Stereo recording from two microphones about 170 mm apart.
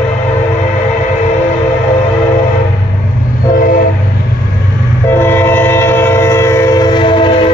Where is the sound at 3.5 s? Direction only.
55° left (ahead or behind).